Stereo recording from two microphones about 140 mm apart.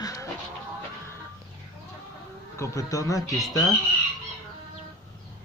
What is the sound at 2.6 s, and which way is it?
Speech, 25° left (ahead or behind).